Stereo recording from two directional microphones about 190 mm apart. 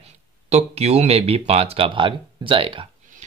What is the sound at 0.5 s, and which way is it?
Speech, 35° right (ahead or behind).